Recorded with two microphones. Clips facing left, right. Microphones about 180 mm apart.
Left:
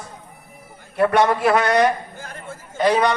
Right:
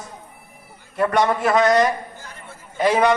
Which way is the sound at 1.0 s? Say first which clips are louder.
Left 2 dB; 5° left (ahead or behind).